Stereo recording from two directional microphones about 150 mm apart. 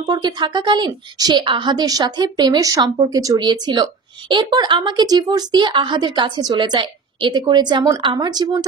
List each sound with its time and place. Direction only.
0.0 s a woman's voice: 30° right (ahead or behind)